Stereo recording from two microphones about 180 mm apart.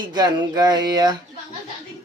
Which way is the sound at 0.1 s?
25° right (ahead or behind).